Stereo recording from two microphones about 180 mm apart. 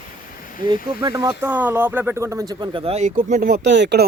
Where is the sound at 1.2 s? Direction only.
15° right (ahead or behind); by 3.5 s 50° right (ahead or behind).